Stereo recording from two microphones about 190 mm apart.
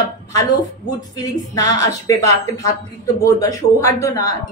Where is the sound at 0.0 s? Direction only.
20° left (ahead or behind).